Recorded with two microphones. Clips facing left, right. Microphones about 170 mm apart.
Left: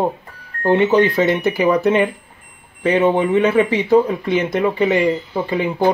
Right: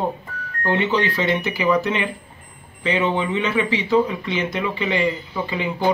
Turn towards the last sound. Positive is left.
turn(degrees=50)  # may be behind; listen again after turning